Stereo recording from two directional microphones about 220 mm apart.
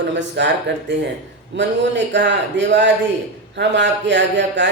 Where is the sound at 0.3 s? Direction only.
55° right (ahead or behind).